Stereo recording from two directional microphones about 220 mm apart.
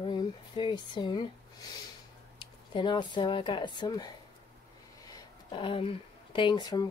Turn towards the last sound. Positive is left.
turn(degrees=20)  # may be behind; listen again after turning